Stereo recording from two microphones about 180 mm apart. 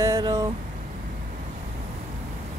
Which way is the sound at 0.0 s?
20° right (ahead or behind).